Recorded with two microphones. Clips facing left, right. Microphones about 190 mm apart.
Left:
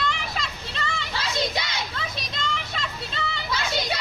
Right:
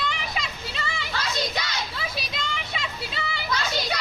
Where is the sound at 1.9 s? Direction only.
5° right (ahead or behind).